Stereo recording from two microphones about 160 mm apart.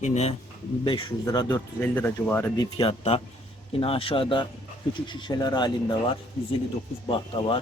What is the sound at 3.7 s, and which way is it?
Speech, 35° left (ahead or behind).